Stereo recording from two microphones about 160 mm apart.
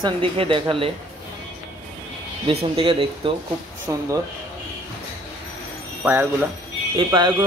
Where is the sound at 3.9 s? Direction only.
15° right (ahead or behind).